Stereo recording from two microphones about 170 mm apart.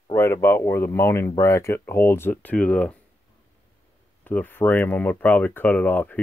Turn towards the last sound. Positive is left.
turn(degrees=10)  # may be behind; listen again after turning